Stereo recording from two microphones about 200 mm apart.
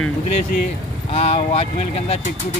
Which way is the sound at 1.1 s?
30° left (ahead or behind).